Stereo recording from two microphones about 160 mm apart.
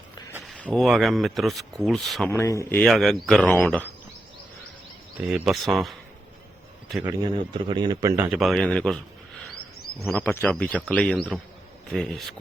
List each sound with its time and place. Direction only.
0.4 s speech: 5° left (ahead or behind)
2.3 s speech: 20° left (ahead or behind)
2.8 s speech: centre (ahead or behind)
5.2 s speech: 5° right (ahead or behind)
7.0 s a man's voice: 20° right (ahead or behind)
8.1 s speech: 15° right (ahead or behind)
8.4 s speech: centre (ahead or behind)
10.1 s speech: 10° left (ahead or behind)